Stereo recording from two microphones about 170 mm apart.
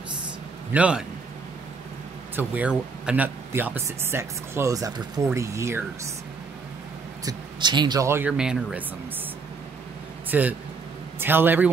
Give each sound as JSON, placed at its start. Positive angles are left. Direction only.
{"t": 0.7, "sound": "speech", "side_deg": -5}
{"t": 2.3, "sound": "speech", "side_deg": -10}
{"t": 7.2, "sound": "speech", "side_deg": -25}
{"t": 10.3, "sound": "speech", "side_deg": -10}